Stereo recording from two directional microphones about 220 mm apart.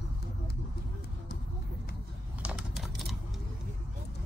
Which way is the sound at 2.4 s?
5° right (ahead or behind).